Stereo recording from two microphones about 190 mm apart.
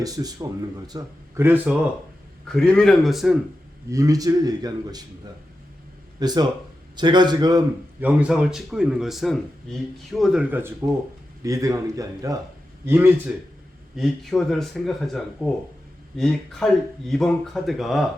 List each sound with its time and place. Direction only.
0.0 s a man's voice: 20° right (ahead or behind)
2.5 s speech: centre (ahead or behind)
3.9 s a man's voice: 20° right (ahead or behind)
6.1 s a man's voice: 20° right (ahead or behind)
8.0 s speech: 5° right (ahead or behind)
11.4 s speech: 20° right (ahead or behind)
13.9 s speech: centre (ahead or behind)